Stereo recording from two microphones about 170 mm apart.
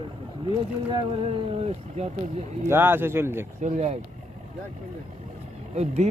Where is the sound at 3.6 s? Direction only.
45° right (ahead or behind).